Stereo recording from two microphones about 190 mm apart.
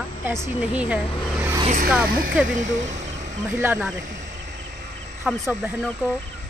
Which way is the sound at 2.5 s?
40° right (ahead or behind).